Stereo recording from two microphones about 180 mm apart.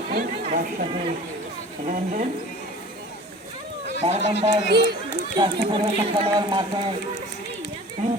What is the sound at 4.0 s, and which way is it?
Speech, 35° right (ahead or behind).